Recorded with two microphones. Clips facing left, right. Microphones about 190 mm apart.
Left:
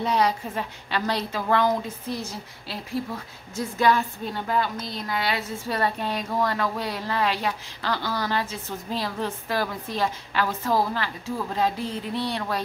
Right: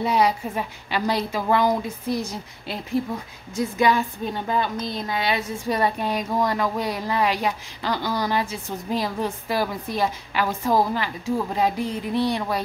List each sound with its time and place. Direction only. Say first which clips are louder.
0.0 s a woman's voice: right 2 dB; 10° right (ahead or behind)
3.5 s a woman's voice: right 2 dB; 15° right (ahead or behind)